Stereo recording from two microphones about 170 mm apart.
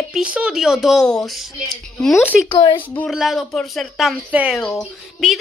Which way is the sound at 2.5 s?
30° left (ahead or behind).